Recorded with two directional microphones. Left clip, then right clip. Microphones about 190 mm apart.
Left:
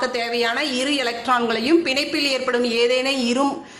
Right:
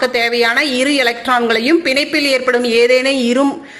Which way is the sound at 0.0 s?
25° right (ahead or behind).